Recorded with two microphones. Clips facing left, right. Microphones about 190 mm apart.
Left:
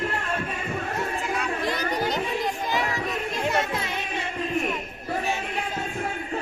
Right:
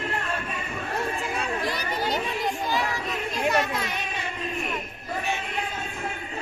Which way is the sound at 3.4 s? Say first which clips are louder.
Right 2 dB; 25° left (ahead or behind).